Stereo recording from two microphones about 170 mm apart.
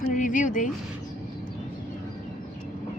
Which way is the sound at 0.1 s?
50° left (ahead or behind).